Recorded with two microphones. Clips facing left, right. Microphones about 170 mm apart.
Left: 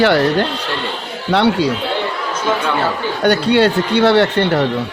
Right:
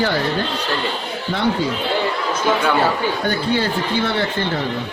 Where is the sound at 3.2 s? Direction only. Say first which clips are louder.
Left 11 dB; 75° left (ahead or behind).